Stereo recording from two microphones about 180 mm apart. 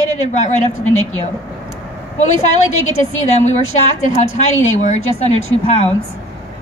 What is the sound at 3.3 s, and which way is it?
A woman's voice, 40° left (ahead or behind).